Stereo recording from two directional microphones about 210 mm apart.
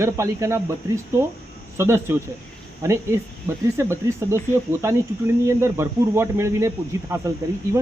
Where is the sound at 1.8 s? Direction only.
10° right (ahead or behind).